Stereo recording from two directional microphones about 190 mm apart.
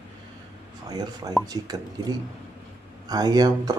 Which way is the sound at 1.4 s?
20° right (ahead or behind).